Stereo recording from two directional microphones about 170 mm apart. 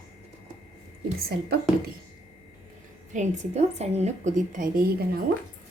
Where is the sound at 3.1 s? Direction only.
45° right (ahead or behind).